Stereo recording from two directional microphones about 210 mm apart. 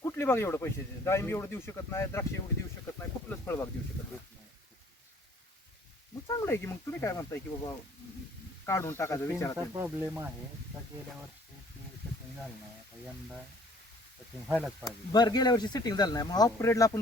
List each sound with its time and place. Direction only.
0.0 s speech: 10° left (ahead or behind)
6.2 s speech: 15° left (ahead or behind)
9.7 s speech: 10° right (ahead or behind)
14.4 s speech: 5° right (ahead or behind)
14.8 s speech: 20° left (ahead or behind)